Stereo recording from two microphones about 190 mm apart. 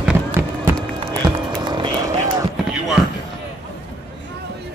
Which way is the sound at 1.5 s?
25° right (ahead or behind).